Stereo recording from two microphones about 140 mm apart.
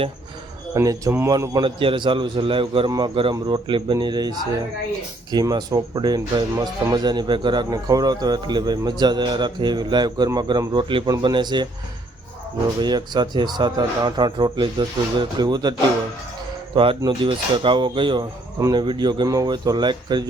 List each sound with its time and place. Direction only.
0.7 s speech: 25° right (ahead or behind)
12.8 s speech: 30° right (ahead or behind)
16.7 s speech: 40° right (ahead or behind)